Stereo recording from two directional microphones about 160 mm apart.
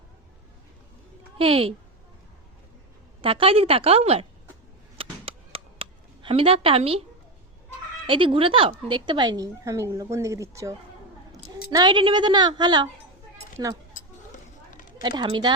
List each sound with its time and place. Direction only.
1.4 s a woman's voice: 35° right (ahead or behind)
3.2 s a woman's voice: 35° right (ahead or behind)
4.9 s a sound: 35° right (ahead or behind)
8.0 s a woman's voice: 30° right (ahead or behind)
14.3 s a sound: 55° left (ahead or behind)
15.0 s a woman's voice: 30° right (ahead or behind)